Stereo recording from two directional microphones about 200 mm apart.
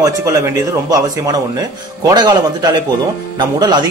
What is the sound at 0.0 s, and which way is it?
Speech, 15° right (ahead or behind).